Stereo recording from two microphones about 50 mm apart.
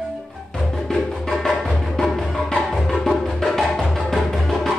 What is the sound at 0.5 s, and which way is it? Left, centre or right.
Music, centre.